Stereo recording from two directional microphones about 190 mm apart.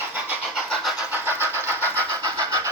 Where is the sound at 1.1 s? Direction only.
10° right (ahead or behind).